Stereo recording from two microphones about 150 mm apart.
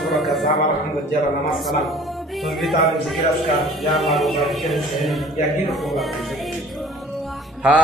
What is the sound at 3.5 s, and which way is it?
A man's voice, centre (ahead or behind).